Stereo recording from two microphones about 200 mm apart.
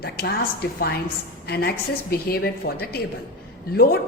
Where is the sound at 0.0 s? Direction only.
50° left (ahead or behind).